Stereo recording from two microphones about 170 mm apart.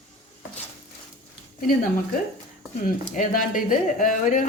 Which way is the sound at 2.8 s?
55° left (ahead or behind).